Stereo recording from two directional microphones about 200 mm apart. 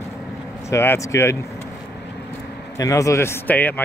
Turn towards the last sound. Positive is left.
turn(degrees=10)  # may be behind; listen again after turning